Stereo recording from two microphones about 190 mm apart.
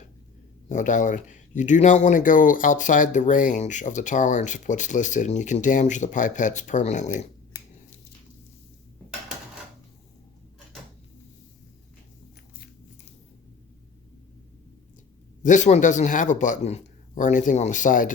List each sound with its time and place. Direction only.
0.7 s speech: 40° left (ahead or behind)
15.4 s speech: 40° left (ahead or behind)